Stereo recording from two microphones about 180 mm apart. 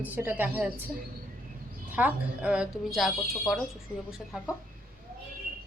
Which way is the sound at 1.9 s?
5° right (ahead or behind).